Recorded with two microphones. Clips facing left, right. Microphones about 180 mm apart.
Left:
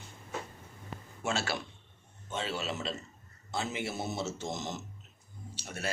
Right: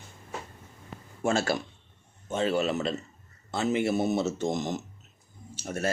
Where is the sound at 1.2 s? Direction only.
45° right (ahead or behind).